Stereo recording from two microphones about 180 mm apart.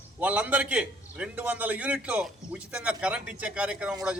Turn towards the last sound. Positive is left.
turn(degrees=-5)  # may be behind; listen again after turning